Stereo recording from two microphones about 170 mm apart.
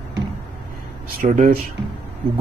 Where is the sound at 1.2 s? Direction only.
55° right (ahead or behind).